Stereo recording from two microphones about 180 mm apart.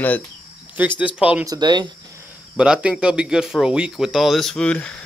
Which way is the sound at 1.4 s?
20° right (ahead or behind).